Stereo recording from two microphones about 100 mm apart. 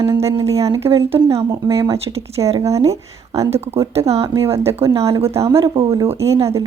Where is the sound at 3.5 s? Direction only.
90° right.